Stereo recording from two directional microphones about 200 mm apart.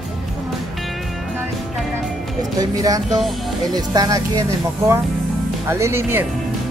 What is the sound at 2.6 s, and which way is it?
Speech, 20° right (ahead or behind).